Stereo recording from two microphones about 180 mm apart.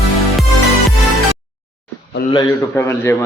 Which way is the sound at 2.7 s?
15° left (ahead or behind).